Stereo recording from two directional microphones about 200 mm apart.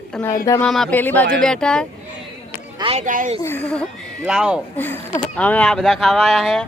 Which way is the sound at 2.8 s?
35° right (ahead or behind).